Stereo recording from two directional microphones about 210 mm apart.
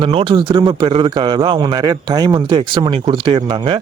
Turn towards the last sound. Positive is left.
turn(degrees=-25)  # may be behind; listen again after turning